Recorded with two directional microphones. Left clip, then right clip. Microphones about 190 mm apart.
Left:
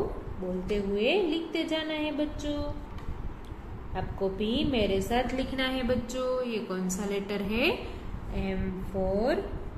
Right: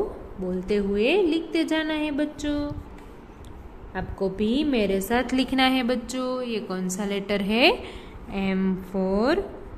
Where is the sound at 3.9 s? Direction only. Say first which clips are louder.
Right 3 dB; 60° right (ahead or behind); by 7.7 s 35° right (ahead or behind).